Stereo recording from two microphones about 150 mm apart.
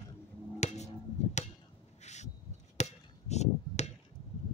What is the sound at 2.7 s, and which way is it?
Chop, 50° left (ahead or behind).